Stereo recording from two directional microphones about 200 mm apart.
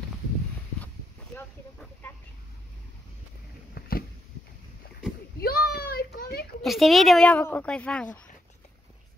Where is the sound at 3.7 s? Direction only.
50° left (ahead or behind).